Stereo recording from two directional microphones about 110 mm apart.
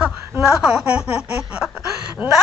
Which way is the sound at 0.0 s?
5° right (ahead or behind).